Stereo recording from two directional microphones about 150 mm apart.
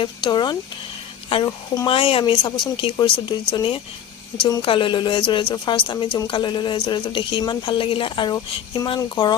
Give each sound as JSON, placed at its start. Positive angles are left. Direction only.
{"t": 0.0, "sound": "speech", "side_deg": 30}